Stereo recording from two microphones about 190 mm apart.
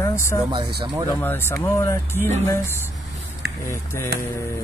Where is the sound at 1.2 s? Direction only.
10° left (ahead or behind).